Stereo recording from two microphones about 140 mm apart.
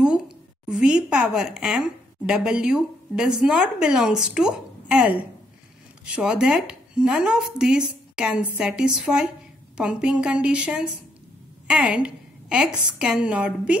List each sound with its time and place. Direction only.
0.7 s a woman's voice: 5° right (ahead or behind)